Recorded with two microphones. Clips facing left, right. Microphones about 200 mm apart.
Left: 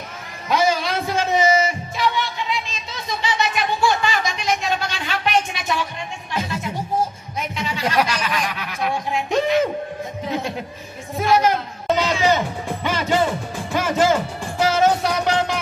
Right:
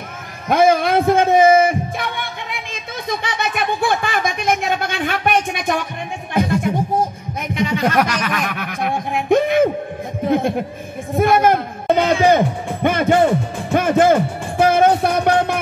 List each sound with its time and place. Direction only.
0.5 s music: 55° right (ahead or behind)
8.0 s snicker: 10° left (ahead or behind)
8.3 s a sound: 55° right (ahead or behind)
11.1 s music: 55° right (ahead or behind)